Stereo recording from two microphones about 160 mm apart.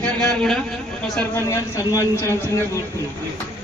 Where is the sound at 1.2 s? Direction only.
15° left (ahead or behind).